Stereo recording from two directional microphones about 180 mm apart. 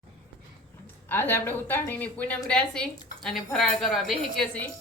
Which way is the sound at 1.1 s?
10° left (ahead or behind).